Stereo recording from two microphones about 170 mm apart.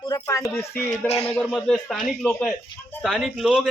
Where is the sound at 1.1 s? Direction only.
35° left (ahead or behind).